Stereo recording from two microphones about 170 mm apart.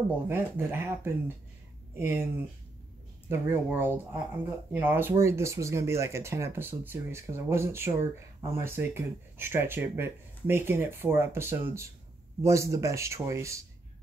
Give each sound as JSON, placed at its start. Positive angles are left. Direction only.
{"t": 0.3, "sound": "speech", "side_deg": -15}
{"t": 3.3, "sound": "speech", "side_deg": -15}